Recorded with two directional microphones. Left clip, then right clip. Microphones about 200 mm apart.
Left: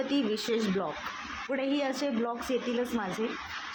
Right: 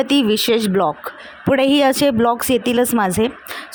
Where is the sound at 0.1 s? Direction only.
55° right (ahead or behind).